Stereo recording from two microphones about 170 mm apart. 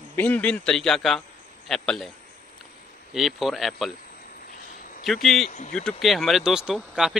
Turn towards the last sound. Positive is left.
turn(degrees=-5)  # may be behind; listen again after turning